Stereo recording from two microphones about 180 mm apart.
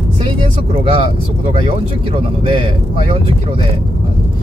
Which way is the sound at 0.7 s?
35° right (ahead or behind).